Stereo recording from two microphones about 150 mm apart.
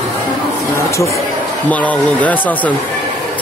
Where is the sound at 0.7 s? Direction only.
20° left (ahead or behind).